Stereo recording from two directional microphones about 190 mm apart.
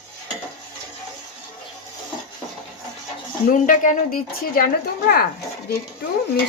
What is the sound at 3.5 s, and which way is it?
Speech, 45° left (ahead or behind).